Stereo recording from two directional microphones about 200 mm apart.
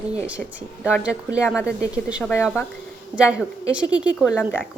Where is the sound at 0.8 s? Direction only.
5° right (ahead or behind).